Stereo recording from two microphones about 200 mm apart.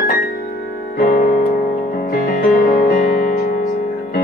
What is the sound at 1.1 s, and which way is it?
Music, 40° left (ahead or behind).